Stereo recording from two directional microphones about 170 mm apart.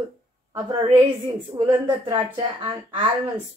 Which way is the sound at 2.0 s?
30° right (ahead or behind).